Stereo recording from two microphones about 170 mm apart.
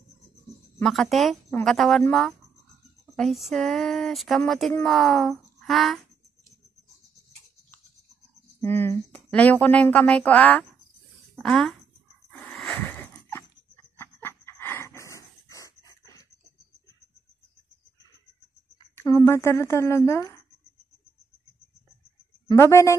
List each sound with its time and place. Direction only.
0.7 s speech: centre (ahead or behind)
8.5 s speech: 10° left (ahead or behind)
12.3 s a sound: centre (ahead or behind)
13.9 s dog: 15° left (ahead or behind)
18.9 s speech: 15° left (ahead or behind)
22.5 s a woman's voice: 15° left (ahead or behind)